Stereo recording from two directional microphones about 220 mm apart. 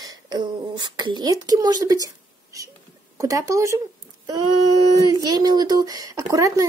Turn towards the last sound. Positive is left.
turn(degrees=-15)  # may be behind; listen again after turning